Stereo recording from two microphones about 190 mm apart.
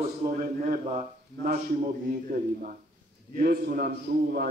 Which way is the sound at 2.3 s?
50° right (ahead or behind).